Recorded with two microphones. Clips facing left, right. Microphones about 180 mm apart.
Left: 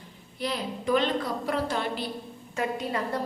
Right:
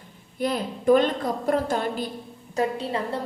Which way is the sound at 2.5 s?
35° right (ahead or behind).